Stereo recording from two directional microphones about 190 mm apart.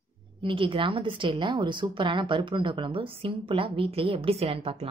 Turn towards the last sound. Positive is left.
turn(degrees=-30)  # may be behind; listen again after turning